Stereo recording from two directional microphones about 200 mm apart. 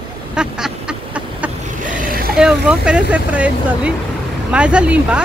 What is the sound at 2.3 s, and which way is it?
Speech, 5° right (ahead or behind).